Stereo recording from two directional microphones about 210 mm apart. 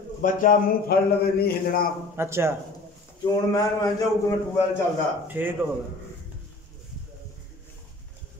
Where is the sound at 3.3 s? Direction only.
15° left (ahead or behind).